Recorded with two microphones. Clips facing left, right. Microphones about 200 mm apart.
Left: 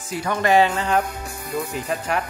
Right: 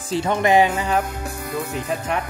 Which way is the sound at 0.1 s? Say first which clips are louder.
Right 2 dB; 25° right (ahead or behind).